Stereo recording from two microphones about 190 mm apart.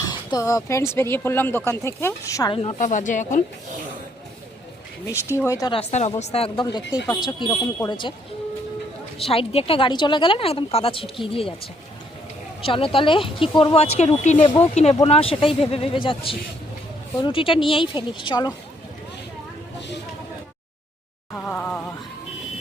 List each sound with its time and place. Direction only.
0.0 s speech: 20° left (ahead or behind)
2.8 s speech: 40° left (ahead or behind)
5.0 s speech: 15° left (ahead or behind)
5.7 s speech: 35° left (ahead or behind)
9.1 s speech: 30° left (ahead or behind)
12.6 s speech: 30° left (ahead or behind)
21.3 s speech: 10° left (ahead or behind)